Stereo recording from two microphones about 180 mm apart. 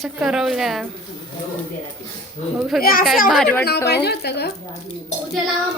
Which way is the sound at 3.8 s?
65° left (ahead or behind).